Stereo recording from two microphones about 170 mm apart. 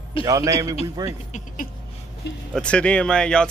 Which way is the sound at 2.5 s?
5° left (ahead or behind).